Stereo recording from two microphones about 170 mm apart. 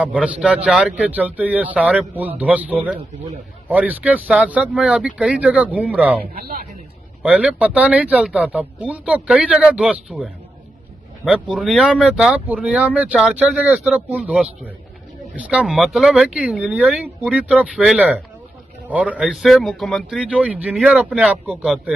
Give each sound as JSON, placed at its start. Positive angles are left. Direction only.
{"t": 0.0, "sound": "speech", "side_deg": -5}
{"t": 6.2, "sound": "speech", "side_deg": -50}
{"t": 7.2, "sound": "speech", "side_deg": -5}
{"t": 11.5, "sound": "a man's voice", "side_deg": -5}